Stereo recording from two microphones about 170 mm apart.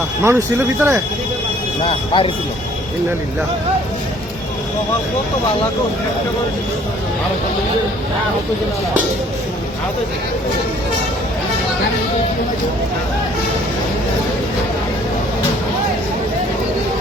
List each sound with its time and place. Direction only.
0.3 s speech: 15° right (ahead or behind)
1.8 s speech: 30° left (ahead or behind)